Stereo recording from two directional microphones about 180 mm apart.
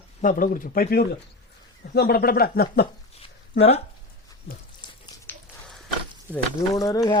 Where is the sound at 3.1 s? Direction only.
35° left (ahead or behind).